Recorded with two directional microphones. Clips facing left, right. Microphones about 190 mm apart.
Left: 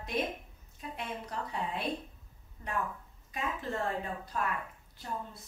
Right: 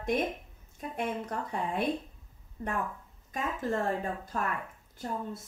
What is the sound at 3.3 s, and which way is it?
Speech, 45° right (ahead or behind).